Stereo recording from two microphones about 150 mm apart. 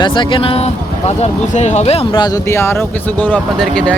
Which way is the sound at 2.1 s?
25° left (ahead or behind).